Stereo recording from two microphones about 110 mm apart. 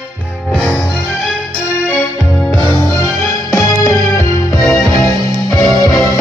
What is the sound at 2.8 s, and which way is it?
Music, 30° left (ahead or behind).